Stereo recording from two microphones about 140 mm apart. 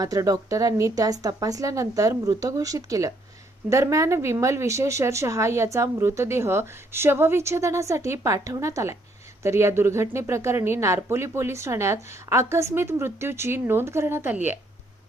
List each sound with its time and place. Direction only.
0.0 s a woman's voice: 25° right (ahead or behind)